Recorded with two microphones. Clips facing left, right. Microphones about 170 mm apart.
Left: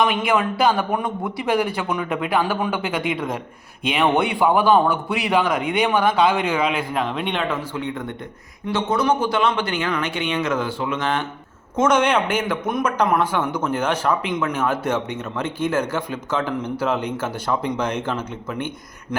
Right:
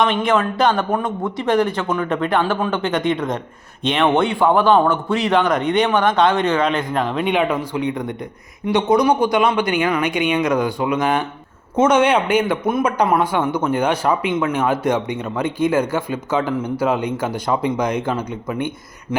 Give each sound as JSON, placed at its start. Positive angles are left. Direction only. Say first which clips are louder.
{"t": 0.0, "sound": "speech", "louder": "right 2 dB", "side_deg": 10}
{"t": 7.3, "sound": "a man's voice", "louder": "right 6 dB", "side_deg": -15}